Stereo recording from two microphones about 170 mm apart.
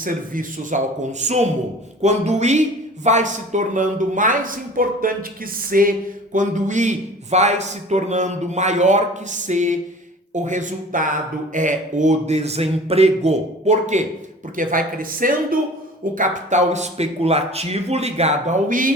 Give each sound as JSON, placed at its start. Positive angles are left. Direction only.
{"t": 0.0, "sound": "a man's voice", "side_deg": -55}
{"t": 1.2, "sound": "a man's voice", "side_deg": -40}
{"t": 5.7, "sound": "a sound", "side_deg": -55}
{"t": 6.3, "sound": "a man's voice", "side_deg": -45}